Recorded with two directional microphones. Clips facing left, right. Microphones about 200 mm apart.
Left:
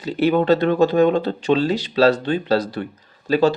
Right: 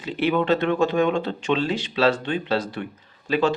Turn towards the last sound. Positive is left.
turn(degrees=40)  # may be behind; listen again after turning